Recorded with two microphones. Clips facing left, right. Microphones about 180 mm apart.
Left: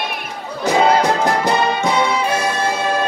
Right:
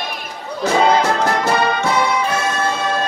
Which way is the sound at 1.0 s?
10° left (ahead or behind).